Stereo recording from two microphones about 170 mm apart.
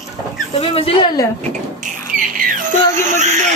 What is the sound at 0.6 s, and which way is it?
Speech, 35° left (ahead or behind).